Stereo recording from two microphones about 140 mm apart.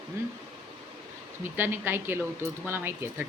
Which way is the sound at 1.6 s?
15° right (ahead or behind).